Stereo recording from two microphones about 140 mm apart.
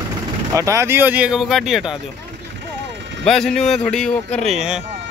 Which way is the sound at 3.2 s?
5° left (ahead or behind).